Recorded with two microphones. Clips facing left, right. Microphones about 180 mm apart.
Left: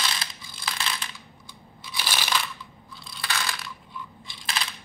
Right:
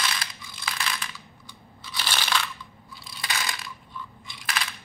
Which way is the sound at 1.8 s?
10° left (ahead or behind).